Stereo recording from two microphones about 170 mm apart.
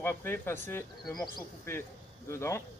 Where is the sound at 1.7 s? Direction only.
15° left (ahead or behind).